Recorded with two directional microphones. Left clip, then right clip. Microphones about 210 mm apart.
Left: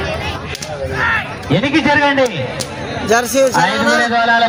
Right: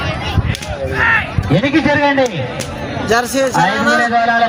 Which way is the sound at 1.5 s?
20° left (ahead or behind).